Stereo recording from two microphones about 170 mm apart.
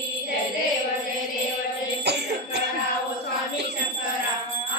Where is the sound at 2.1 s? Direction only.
80° right.